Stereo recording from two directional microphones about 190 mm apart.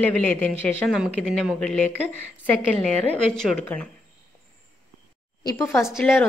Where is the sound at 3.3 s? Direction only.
5° left (ahead or behind).